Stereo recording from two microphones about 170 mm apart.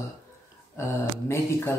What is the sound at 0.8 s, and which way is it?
Speech, 15° left (ahead or behind).